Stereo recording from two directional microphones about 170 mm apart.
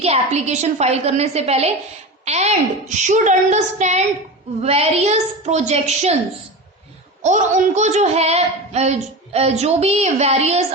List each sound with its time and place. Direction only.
0.0 s a woman's voice: 40° right (ahead or behind)
7.2 s speech: 45° right (ahead or behind)